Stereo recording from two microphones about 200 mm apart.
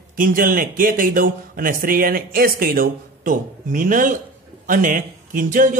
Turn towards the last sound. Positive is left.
turn(degrees=-40)  # may be behind; listen again after turning